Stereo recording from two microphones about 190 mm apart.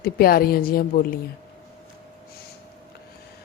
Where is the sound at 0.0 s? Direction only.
50° left (ahead or behind).